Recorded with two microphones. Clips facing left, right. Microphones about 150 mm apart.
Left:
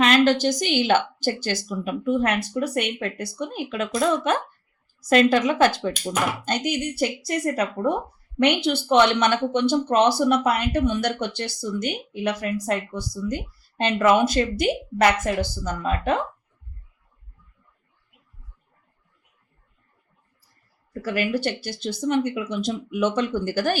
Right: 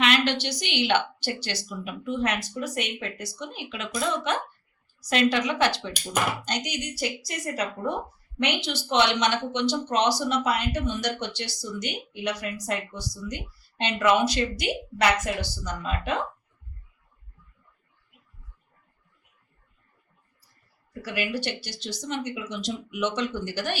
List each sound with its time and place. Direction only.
0.0 s speech: 45° left (ahead or behind)
21.0 s speech: 45° left (ahead or behind)